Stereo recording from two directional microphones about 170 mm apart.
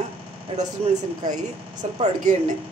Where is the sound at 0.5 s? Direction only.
40° right (ahead or behind).